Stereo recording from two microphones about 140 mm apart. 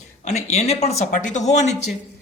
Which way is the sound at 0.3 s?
50° left (ahead or behind).